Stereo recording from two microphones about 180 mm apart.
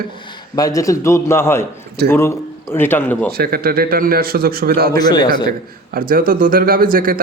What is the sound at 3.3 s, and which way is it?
A man's voice, 55° right (ahead or behind).